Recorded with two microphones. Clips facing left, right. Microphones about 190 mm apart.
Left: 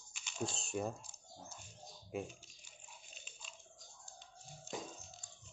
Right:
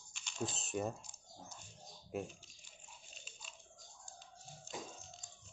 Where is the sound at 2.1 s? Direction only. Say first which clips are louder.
Even; centre (ahead or behind).